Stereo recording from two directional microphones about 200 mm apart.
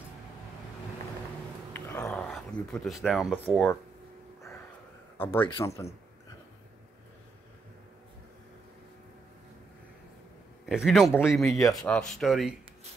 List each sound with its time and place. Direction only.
1.7 s dog: 10° left (ahead or behind)
5.1 s speech: 10° left (ahead or behind)
10.6 s speech: centre (ahead or behind)